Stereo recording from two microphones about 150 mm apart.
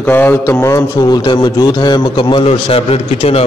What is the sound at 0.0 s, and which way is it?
A man's voice, 15° left (ahead or behind).